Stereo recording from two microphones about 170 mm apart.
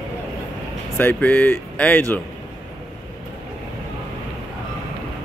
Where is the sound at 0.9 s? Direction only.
10° left (ahead or behind).